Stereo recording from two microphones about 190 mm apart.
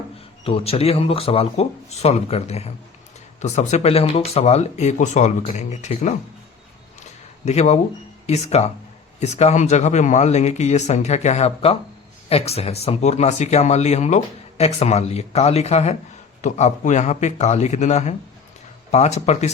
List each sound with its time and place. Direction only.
0.4 s speech: 30° left (ahead or behind)
7.4 s speech: 35° left (ahead or behind)